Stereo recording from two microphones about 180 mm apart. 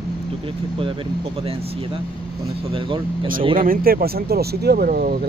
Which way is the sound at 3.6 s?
55° right (ahead or behind).